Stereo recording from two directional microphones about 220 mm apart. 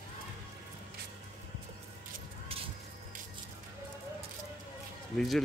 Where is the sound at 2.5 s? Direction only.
25° right (ahead or behind).